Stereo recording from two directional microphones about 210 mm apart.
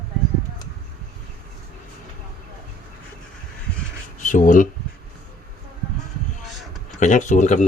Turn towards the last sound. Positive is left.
turn(degrees=35)  # may be behind; listen again after turning